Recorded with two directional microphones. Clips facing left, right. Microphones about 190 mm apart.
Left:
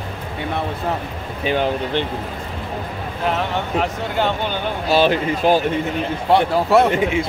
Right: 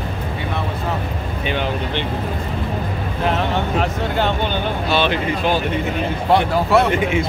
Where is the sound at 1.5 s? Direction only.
40° left (ahead or behind).